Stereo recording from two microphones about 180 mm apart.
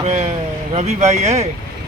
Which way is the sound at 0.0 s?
40° right (ahead or behind).